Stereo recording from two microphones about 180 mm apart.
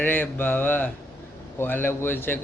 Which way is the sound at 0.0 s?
10° left (ahead or behind).